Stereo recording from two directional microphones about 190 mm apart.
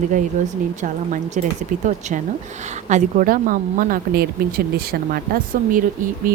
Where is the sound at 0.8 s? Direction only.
40° right (ahead or behind).